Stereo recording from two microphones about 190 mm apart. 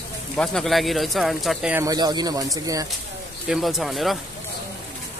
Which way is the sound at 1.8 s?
20° right (ahead or behind).